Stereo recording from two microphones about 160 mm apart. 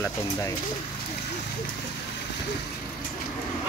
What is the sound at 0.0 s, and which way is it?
Speech, 20° left (ahead or behind).